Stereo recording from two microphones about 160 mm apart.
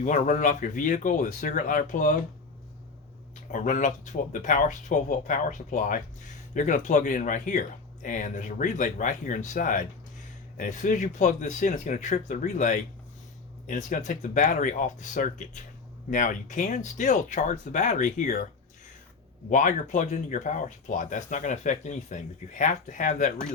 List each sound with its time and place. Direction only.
0.0 s speech: 55° left (ahead or behind)
3.5 s speech: 55° left (ahead or behind)
19.5 s speech: 55° left (ahead or behind)